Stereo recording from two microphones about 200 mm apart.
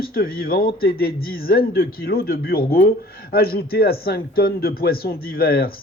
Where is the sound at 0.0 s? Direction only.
50° left (ahead or behind).